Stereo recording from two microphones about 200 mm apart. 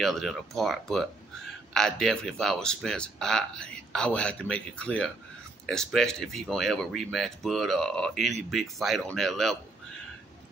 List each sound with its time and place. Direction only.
0.0 s speech: centre (ahead or behind)